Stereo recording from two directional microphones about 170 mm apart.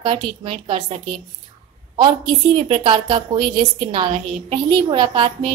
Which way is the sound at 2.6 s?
35° right (ahead or behind).